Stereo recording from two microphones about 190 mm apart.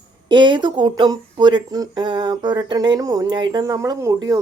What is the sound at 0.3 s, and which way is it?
Speech, 25° right (ahead or behind).